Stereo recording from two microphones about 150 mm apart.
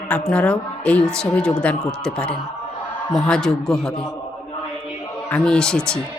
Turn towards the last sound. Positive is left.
turn(degrees=5)  # may be behind; listen again after turning